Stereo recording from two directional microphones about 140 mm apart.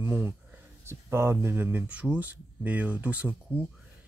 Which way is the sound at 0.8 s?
20° right (ahead or behind).